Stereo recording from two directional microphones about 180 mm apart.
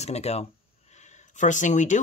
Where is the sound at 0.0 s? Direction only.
35° left (ahead or behind).